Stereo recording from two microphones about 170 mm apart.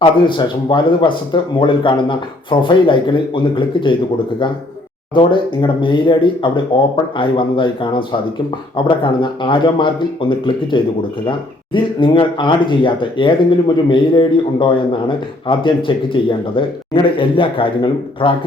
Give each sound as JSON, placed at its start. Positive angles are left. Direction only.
{"t": 0.0, "sound": "speech", "side_deg": 30}
{"t": 5.1, "sound": "a man's voice", "side_deg": 30}